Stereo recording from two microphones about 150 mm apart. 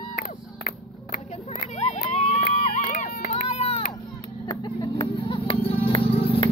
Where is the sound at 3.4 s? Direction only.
40° left (ahead or behind).